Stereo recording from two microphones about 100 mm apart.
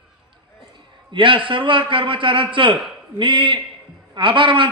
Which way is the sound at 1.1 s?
55° right (ahead or behind).